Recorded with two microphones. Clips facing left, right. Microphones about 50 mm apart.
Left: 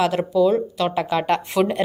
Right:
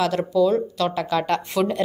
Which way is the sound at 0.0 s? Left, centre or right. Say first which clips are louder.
Left 1 dB; centre.